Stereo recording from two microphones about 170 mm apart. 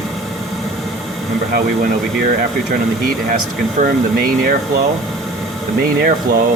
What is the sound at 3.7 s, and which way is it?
Speech, 60° right (ahead or behind).